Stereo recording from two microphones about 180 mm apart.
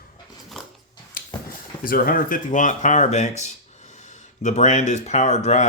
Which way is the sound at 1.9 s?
55° left (ahead or behind).